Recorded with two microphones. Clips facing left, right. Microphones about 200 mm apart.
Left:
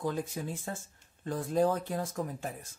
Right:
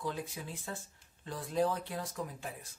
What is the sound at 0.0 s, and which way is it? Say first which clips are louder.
Speech: left 5 dB; 45° left (ahead or behind).